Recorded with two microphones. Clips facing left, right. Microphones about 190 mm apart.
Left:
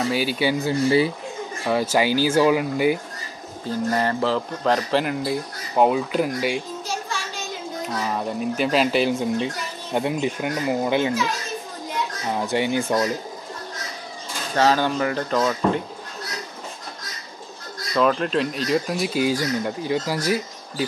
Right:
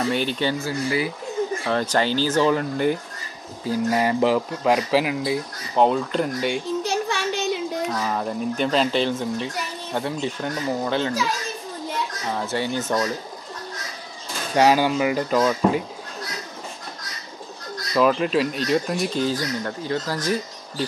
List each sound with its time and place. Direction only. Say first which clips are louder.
0.1 s speech: left 1 dB; 5° left (ahead or behind)
0.7 s speech: left 5 dB; 30° left (ahead or behind)
1.7 s speech: left 4 dB; 10° left (ahead or behind)
3.6 s speech: right 2 dB; 10° right (ahead or behind)
6.8 s a sound: right 6 dB; 65° right (ahead or behind)
7.8 s speech: right 1 dB; 5° left (ahead or behind)
12.3 s speech: left 3 dB; 15° left (ahead or behind)
14.5 s speech: right 2 dB; 15° right (ahead or behind)
17.9 s speech: right 1 dB; 5° right (ahead or behind)